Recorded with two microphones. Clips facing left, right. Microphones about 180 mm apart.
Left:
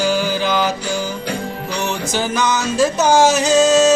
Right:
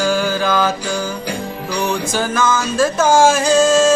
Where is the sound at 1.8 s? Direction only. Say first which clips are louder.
Right 2 dB; 20° left (ahead or behind).